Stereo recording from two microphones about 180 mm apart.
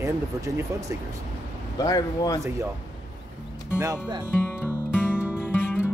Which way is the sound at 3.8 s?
20° right (ahead or behind).